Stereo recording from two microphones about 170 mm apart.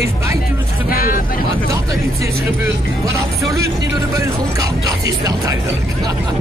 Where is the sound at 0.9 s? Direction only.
60° left (ahead or behind).